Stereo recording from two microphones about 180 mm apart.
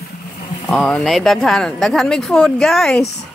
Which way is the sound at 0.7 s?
5° left (ahead or behind).